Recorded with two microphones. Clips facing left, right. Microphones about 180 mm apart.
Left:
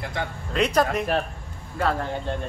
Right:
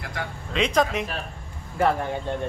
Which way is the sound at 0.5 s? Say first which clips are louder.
Left 1 dB; 5° left (ahead or behind).